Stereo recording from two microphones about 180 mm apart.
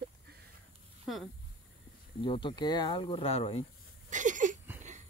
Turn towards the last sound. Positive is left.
turn(degrees=-45)  # may be behind; listen again after turning